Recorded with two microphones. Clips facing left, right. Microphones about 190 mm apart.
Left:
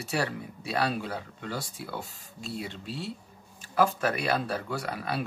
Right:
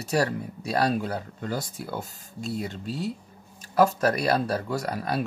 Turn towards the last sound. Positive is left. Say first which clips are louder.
# right 4 dB
turn(degrees=-40)  # may be behind; listen again after turning